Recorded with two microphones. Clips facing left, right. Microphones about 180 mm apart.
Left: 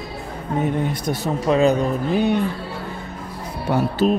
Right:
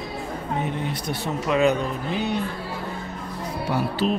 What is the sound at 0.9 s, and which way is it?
Speech, 40° left (ahead or behind).